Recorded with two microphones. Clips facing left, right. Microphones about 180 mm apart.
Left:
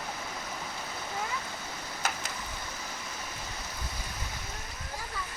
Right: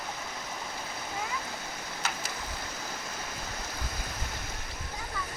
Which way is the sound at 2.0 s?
50° left (ahead or behind).